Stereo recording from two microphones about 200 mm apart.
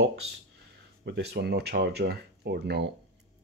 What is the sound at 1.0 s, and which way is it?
Speech, 55° right (ahead or behind).